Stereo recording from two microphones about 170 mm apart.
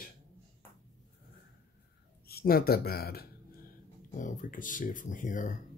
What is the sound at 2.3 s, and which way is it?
Speech, 65° left (ahead or behind).